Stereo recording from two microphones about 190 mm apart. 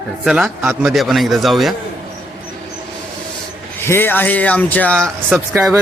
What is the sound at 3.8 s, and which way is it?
Speech, 10° left (ahead or behind).